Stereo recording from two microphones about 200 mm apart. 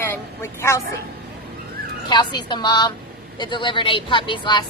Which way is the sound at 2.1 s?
20° left (ahead or behind).